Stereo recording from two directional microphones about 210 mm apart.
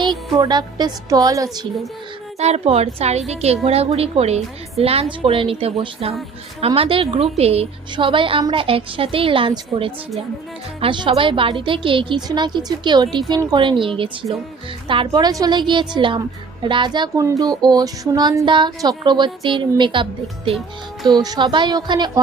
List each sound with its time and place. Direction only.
0.0 s a woman's voice: 20° right (ahead or behind)
2.4 s a woman's voice: 30° right (ahead or behind)
21.1 s a woman's voice: 20° right (ahead or behind)